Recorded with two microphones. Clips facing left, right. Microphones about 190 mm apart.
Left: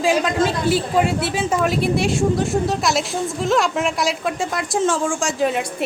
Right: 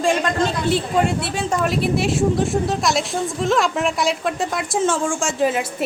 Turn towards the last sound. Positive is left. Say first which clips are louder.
# even
turn(degrees=0)  # may be behind; listen again after turning